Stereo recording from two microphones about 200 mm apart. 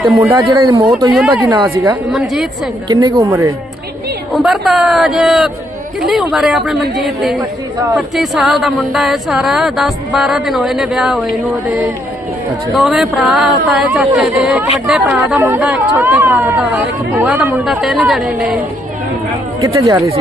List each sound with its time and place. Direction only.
0.2 s speech: 15° right (ahead or behind)
2.9 s speech: 15° right (ahead or behind)
4.4 s speech: centre (ahead or behind)
12.7 s speech: centre (ahead or behind)
19.6 s speech: 15° right (ahead or behind)